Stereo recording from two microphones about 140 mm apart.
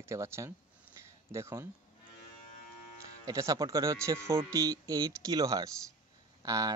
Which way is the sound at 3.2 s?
25° right (ahead or behind).